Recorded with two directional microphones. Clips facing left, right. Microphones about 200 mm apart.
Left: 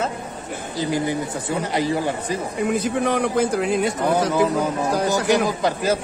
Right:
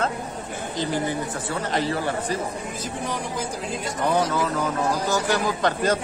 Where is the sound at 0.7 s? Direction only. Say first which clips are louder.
Left 3 dB; 15° left (ahead or behind).